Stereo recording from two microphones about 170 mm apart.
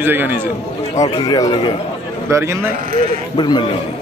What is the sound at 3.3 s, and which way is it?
Speech, 25° left (ahead or behind).